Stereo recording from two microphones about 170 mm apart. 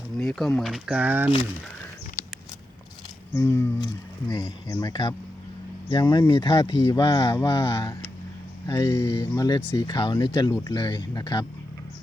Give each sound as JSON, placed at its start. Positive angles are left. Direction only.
{"t": 0.2, "sound": "speech", "side_deg": 0}
{"t": 3.3, "sound": "speech", "side_deg": 15}
{"t": 7.3, "sound": "speech", "side_deg": 15}